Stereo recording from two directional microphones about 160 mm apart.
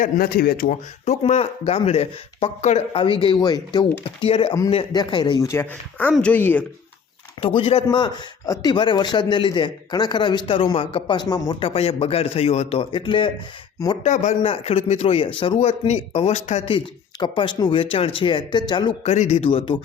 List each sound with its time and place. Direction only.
0.0 s speech: 65° left (ahead or behind)
1.0 s speech: 45° left (ahead or behind)
2.9 s speech: 35° left (ahead or behind); by 6.7 s 10° left (ahead or behind)
7.4 s speech: 35° left (ahead or behind)
11.7 s speech: 35° left (ahead or behind)
14.0 s a man's voice: 50° left (ahead or behind)
14.4 s speech: 35° left (ahead or behind)
15.5 s speech: 45° left (ahead or behind)
19.0 s speech: 45° left (ahead or behind)